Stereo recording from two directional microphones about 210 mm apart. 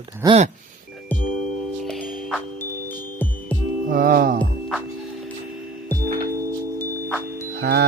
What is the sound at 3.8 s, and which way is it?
Music, 40° right (ahead or behind).